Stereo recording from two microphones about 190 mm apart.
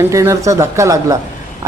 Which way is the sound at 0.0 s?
15° right (ahead or behind).